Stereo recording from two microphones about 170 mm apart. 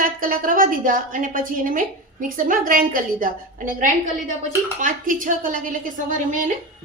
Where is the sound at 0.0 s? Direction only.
55° right (ahead or behind).